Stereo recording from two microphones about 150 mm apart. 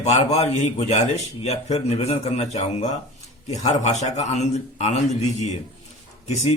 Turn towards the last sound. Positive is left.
turn(degrees=45)  # may be behind; listen again after turning